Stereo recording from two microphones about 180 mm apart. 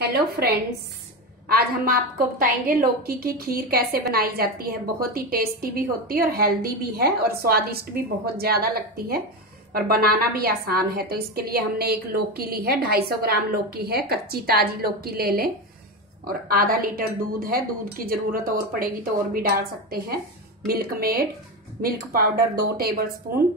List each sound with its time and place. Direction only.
1.5 s a woman's voice: 55° right (ahead or behind)